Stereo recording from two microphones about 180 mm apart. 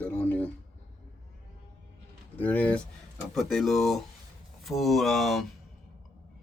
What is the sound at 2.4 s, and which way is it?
Speech, 10° left (ahead or behind).